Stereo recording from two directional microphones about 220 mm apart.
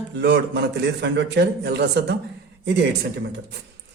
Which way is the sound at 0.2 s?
50° right (ahead or behind).